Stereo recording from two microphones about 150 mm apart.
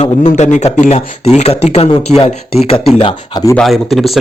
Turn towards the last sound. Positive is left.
turn(degrees=0)  # may be behind; listen again after turning